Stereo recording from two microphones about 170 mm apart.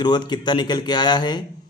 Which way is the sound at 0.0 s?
25° left (ahead or behind).